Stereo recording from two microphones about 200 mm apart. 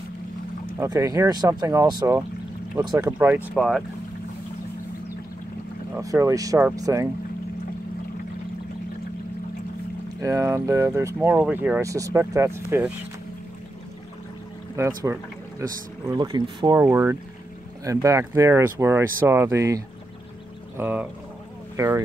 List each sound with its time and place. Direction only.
0.7 s speech: 15° right (ahead or behind); by 3.8 s centre (ahead or behind)
5.9 s speech: 15° right (ahead or behind)
10.2 s speech: 15° right (ahead or behind)
14.8 s speech: 15° right (ahead or behind)
16.1 s speech: 20° right (ahead or behind)